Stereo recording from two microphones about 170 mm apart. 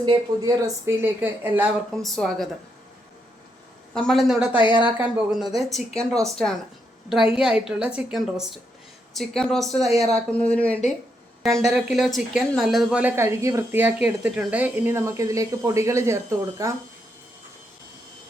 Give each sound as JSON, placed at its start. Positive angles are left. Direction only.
{"t": 0.0, "sound": "speech", "side_deg": -25}
{"t": 0.9, "sound": "speech", "side_deg": -10}
{"t": 2.0, "sound": "speech", "side_deg": 0}
{"t": 3.9, "sound": "speech", "side_deg": 0}